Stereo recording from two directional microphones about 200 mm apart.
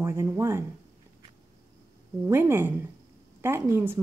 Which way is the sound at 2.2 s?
10° right (ahead or behind).